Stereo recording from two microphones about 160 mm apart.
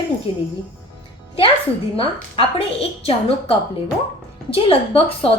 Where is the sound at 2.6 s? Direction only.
35° left (ahead or behind).